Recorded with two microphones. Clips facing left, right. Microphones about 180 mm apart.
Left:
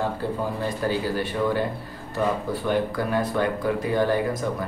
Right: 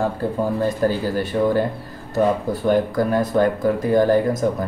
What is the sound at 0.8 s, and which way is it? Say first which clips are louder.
Speech: right 4 dB; 45° right (ahead or behind).